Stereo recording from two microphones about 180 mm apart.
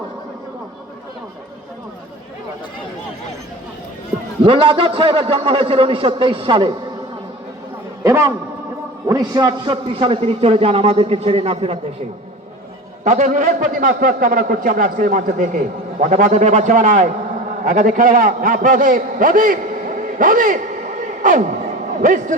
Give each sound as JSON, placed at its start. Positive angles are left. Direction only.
{"t": 4.4, "sound": "a man's voice", "side_deg": -30}
{"t": 8.0, "sound": "a man's voice", "side_deg": -15}
{"t": 13.1, "sound": "a man's voice", "side_deg": -40}